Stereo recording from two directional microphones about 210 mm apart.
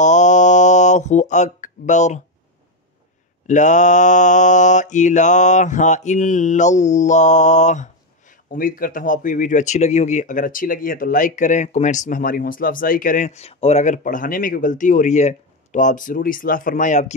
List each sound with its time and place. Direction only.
0.0 s mantra: 35° left (ahead or behind)
3.4 s mantra: 35° left (ahead or behind)